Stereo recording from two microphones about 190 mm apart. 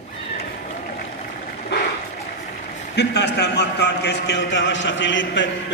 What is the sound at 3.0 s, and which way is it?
A man's voice, 65° left (ahead or behind).